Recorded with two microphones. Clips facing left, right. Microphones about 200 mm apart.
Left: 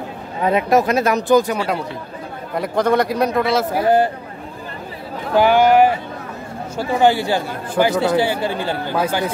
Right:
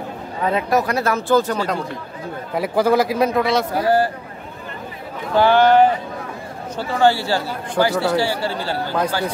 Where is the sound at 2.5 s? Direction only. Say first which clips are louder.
Even; 5° right (ahead or behind).